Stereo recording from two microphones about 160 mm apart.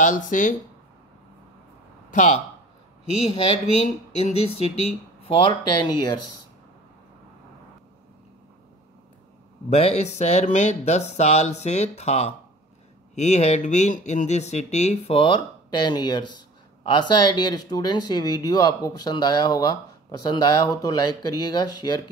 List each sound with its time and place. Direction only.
0.0 s speech: 55° left (ahead or behind)
2.1 s speech: 50° left (ahead or behind)
3.8 s speech: 40° left (ahead or behind)
9.7 s speech: 40° left (ahead or behind); by 22.0 s 25° left (ahead or behind)